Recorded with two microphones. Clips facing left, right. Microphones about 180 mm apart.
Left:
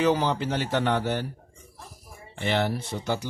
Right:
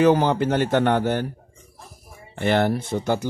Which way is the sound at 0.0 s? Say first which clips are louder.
Right 6 dB; 55° right (ahead or behind).